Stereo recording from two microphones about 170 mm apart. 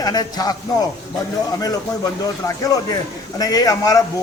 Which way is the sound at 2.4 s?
20° left (ahead or behind).